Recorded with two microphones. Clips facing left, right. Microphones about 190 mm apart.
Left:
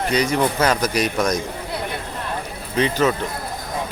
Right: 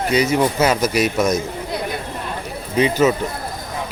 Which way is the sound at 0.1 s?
10° right (ahead or behind).